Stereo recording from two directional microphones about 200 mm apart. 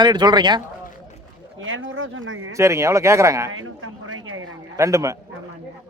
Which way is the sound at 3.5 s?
90° right.